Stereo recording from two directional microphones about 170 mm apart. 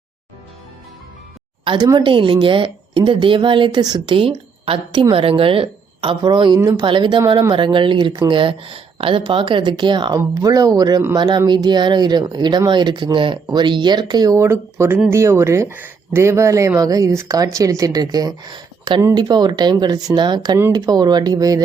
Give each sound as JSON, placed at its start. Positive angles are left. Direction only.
{"t": 1.6, "sound": "speech", "side_deg": -25}